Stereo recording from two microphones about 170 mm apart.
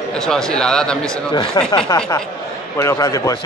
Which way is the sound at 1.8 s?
25° left (ahead or behind).